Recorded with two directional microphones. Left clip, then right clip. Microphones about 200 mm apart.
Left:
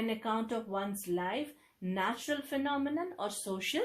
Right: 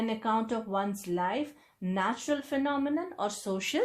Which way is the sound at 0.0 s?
30° right (ahead or behind).